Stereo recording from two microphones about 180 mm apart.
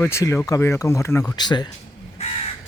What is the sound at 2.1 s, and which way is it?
Crow, 35° left (ahead or behind).